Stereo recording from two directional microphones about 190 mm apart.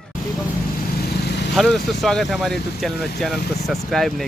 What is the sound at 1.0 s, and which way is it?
Vehicle, 60° left (ahead or behind).